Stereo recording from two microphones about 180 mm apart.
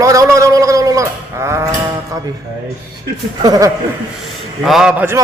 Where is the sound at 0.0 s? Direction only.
20° right (ahead or behind).